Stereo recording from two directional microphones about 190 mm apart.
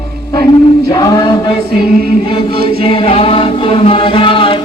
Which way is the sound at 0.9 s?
20° left (ahead or behind).